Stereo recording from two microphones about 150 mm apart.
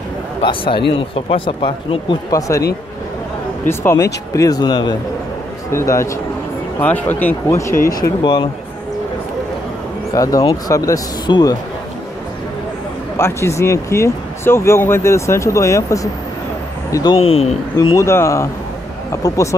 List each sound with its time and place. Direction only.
0.4 s speech: 35° left (ahead or behind)
2.3 s speech: 20° left (ahead or behind)
3.6 s a man's voice: 15° left (ahead or behind)
10.1 s speech: 25° left (ahead or behind)
13.2 s speech: 20° left (ahead or behind)
17.2 s speech: 40° left (ahead or behind)
17.9 s speech: 20° left (ahead or behind)